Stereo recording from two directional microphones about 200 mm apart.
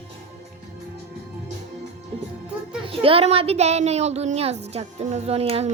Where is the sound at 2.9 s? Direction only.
30° right (ahead or behind).